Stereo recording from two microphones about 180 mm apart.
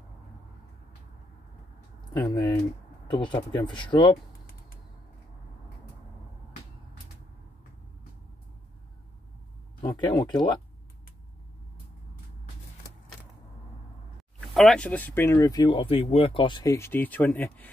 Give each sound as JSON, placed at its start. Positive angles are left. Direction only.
{"t": 2.2, "sound": "speech", "side_deg": 20}
{"t": 9.8, "sound": "speech", "side_deg": 25}
{"t": 14.5, "sound": "speech", "side_deg": 0}
{"t": 16.7, "sound": "speech", "side_deg": 10}